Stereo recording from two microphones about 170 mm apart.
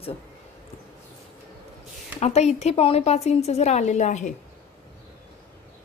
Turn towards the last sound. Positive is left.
turn(degrees=45)  # may be behind; listen again after turning